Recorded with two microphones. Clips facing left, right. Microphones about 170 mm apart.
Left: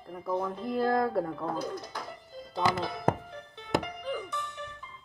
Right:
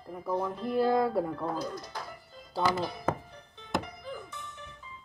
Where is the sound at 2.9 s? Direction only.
85° left.